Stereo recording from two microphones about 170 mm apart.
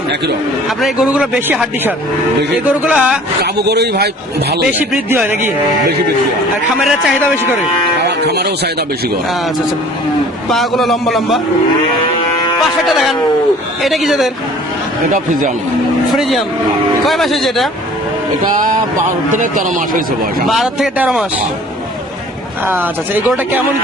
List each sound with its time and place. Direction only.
1.1 s speech: 5° right (ahead or behind)
2.6 s speech: 10° right (ahead or behind)
3.4 s a man's voice: 75° right (ahead or behind)
4.8 s speech: 10° right (ahead or behind)
6.7 s a man's voice: centre (ahead or behind)
8.3 s a man's voice: 75° right (ahead or behind)
10.5 s a man's voice: centre (ahead or behind)
12.9 s a man's voice: centre (ahead or behind)
15.1 s a man's voice: 50° right (ahead or behind)
16.1 s a man's voice: centre (ahead or behind)
19.4 s a man's voice: 50° right (ahead or behind)
20.5 s a man's voice: centre (ahead or behind)
22.6 s speech: 10° right (ahead or behind)